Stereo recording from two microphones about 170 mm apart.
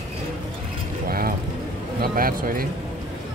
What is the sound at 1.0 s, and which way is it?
Vehicle, 60° right (ahead or behind).